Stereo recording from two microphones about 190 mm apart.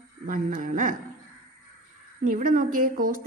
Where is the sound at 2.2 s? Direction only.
45° right (ahead or behind).